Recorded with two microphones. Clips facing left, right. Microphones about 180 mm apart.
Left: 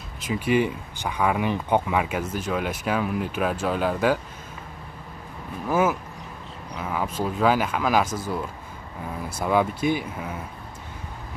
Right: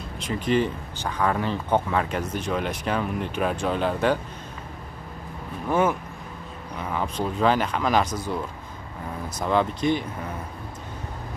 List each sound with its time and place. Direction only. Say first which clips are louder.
0.2 s speech: left 1 dB; 10° left (ahead or behind)
5.7 s speech: even; 5° left (ahead or behind)
9.4 s speech: left 1 dB; 10° left (ahead or behind)